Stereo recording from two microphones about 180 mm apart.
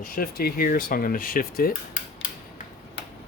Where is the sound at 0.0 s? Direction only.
50° left (ahead or behind).